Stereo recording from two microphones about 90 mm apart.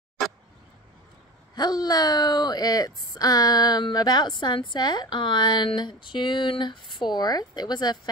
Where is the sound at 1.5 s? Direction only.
50° left (ahead or behind).